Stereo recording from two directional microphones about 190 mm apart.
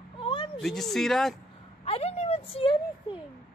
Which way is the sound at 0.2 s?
25° left (ahead or behind).